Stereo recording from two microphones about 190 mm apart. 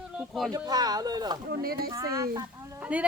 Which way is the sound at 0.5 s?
20° right (ahead or behind).